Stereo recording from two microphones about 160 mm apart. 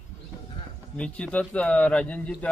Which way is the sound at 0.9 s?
5° left (ahead or behind).